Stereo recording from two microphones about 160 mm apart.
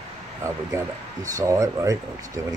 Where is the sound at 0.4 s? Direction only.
20° right (ahead or behind).